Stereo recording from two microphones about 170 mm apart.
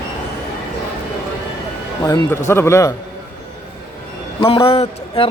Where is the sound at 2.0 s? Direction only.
20° left (ahead or behind).